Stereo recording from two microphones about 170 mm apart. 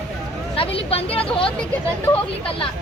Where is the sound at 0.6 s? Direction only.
35° left (ahead or behind).